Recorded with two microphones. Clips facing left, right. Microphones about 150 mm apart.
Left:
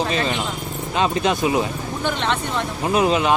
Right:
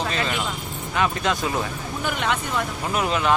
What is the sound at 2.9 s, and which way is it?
Speech, 20° left (ahead or behind).